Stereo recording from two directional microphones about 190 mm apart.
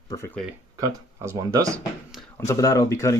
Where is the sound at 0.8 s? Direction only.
15° right (ahead or behind).